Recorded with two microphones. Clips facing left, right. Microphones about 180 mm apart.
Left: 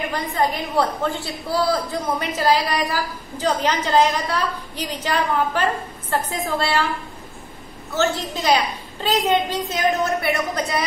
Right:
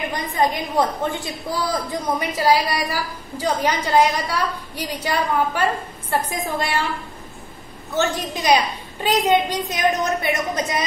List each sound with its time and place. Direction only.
0.1 s a woman's voice: 20° right (ahead or behind)
7.9 s a woman's voice: 15° right (ahead or behind)